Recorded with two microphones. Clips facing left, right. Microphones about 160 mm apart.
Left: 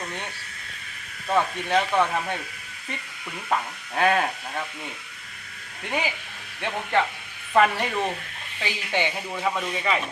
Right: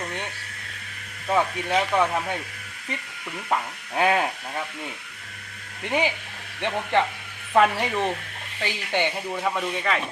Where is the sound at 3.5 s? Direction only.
5° right (ahead or behind).